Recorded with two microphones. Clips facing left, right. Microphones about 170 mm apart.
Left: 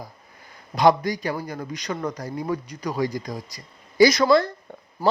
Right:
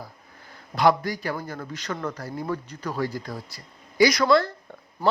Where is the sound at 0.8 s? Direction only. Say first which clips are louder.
Left 3 dB; 20° left (ahead or behind).